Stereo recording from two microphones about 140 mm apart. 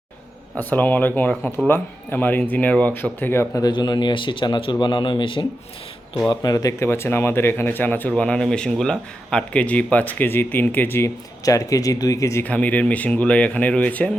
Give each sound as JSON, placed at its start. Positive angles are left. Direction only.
{"t": 0.5, "sound": "speech", "side_deg": 10}
{"t": 3.6, "sound": "a man's voice", "side_deg": 30}